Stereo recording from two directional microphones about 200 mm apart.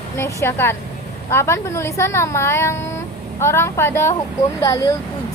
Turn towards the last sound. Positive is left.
turn(degrees=15)  # may be behind; listen again after turning